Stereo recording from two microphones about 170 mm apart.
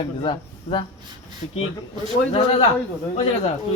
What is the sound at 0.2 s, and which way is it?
Speech, 25° left (ahead or behind).